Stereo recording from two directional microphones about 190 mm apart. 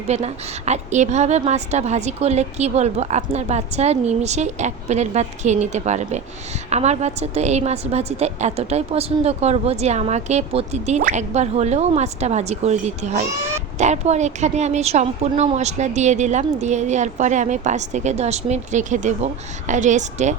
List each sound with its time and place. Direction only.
0.1 s a woman's voice: 35° right (ahead or behind)